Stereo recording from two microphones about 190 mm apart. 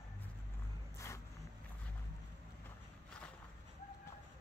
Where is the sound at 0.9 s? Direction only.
15° left (ahead or behind).